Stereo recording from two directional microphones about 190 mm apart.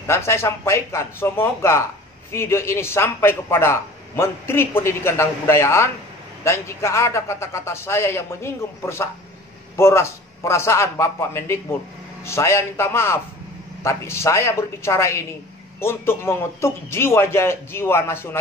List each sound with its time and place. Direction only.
0.0 s a man's voice: 15° left (ahead or behind)